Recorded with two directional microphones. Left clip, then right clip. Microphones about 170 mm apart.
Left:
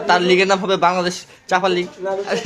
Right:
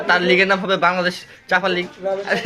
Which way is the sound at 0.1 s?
30° left (ahead or behind).